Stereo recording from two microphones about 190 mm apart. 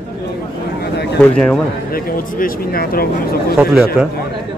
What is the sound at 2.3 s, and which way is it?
Speech, 50° left (ahead or behind).